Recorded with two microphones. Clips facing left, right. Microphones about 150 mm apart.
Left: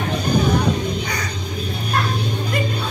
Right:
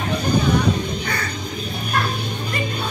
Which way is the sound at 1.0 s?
15° left (ahead or behind).